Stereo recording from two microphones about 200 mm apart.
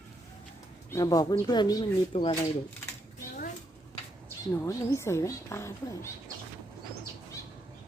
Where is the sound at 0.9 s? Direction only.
20° left (ahead or behind).